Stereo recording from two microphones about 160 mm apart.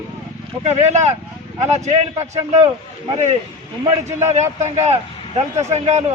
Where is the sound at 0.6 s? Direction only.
45° right (ahead or behind).